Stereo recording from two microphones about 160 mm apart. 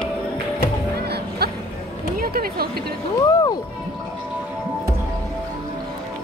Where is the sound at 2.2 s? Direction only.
65° right (ahead or behind).